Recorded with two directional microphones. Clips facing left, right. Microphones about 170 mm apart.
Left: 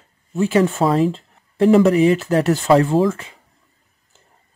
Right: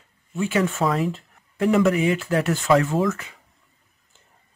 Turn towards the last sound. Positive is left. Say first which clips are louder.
# left 6 dB
turn(degrees=30)  # may be behind; listen again after turning